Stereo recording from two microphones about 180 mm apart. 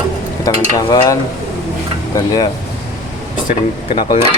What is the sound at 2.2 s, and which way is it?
Stir, 20° left (ahead or behind).